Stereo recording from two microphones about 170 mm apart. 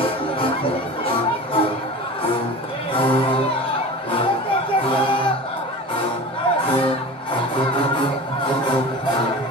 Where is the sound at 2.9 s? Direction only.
30° left (ahead or behind).